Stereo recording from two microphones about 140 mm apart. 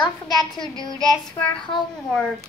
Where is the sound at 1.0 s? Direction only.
30° left (ahead or behind).